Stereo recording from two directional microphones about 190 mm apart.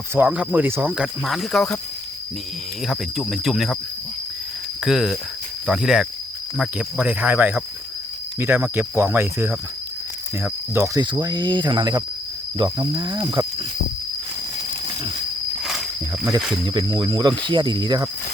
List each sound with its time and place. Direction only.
0.1 s speech: 10° right (ahead or behind)
2.8 s speech: centre (ahead or behind)
4.8 s speech: centre (ahead or behind)
10.4 s cricket: 15° right (ahead or behind)
16.4 s speech: centre (ahead or behind)
16.6 s cricket: 25° right (ahead or behind)